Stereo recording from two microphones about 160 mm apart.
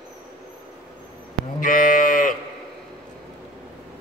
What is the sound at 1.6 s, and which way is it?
Livestock, 55° left (ahead or behind).